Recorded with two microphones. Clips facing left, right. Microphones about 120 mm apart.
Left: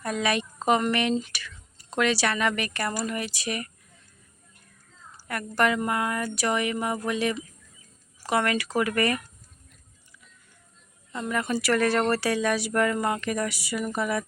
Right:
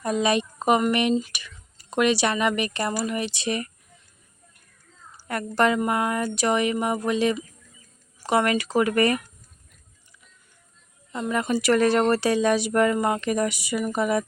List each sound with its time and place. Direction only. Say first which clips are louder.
0.0 s speech: right 4 dB; 20° right (ahead or behind)
5.3 s speech: right 3 dB; 25° right (ahead or behind)
11.1 s speech: right 3 dB; 20° right (ahead or behind)